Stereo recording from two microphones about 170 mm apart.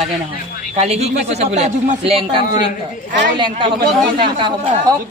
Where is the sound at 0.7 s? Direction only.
40° right (ahead or behind).